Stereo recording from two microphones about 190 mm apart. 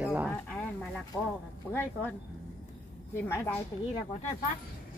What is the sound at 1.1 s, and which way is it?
Speech, 5° left (ahead or behind).